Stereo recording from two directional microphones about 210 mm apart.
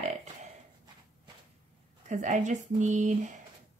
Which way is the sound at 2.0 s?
35° right (ahead or behind).